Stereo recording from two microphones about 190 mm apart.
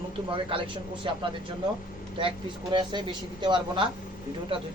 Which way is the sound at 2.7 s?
25° right (ahead or behind).